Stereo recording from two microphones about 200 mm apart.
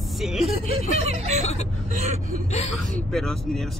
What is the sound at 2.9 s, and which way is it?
Speech, centre (ahead or behind).